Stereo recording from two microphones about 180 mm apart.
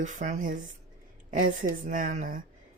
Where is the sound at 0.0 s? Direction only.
45° right (ahead or behind).